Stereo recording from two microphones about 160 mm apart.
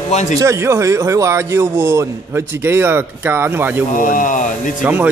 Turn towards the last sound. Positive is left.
turn(degrees=-10)  # may be behind; listen again after turning